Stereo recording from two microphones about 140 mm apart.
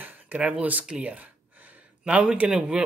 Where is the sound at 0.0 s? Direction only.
15° right (ahead or behind).